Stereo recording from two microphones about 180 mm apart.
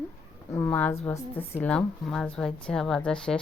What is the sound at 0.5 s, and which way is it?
A woman's voice, 10° left (ahead or behind).